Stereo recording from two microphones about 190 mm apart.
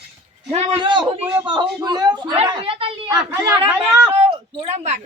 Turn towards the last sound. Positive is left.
turn(degrees=-35)  # may be behind; listen again after turning